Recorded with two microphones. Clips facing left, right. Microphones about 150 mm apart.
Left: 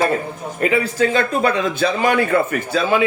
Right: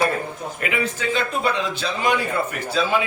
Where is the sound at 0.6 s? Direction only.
40° left (ahead or behind).